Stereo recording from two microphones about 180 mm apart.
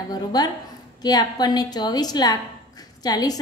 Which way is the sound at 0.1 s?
20° left (ahead or behind).